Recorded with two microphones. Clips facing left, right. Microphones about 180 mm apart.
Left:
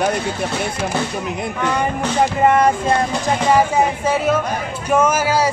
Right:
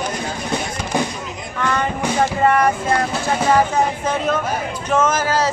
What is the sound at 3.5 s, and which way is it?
Speech, 10° left (ahead or behind).